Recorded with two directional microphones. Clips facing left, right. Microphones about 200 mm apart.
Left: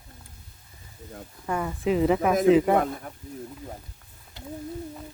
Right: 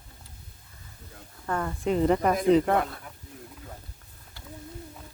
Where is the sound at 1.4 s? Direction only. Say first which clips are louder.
Left 2 dB; 10° left (ahead or behind).